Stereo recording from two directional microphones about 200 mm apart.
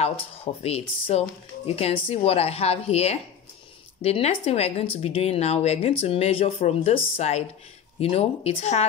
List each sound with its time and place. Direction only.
0.6 s speech: 30° left (ahead or behind)